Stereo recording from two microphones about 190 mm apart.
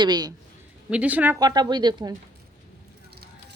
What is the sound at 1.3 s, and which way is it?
Speech, 20° right (ahead or behind).